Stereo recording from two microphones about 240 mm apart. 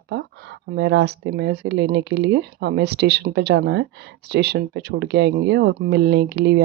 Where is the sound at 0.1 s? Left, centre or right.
Right.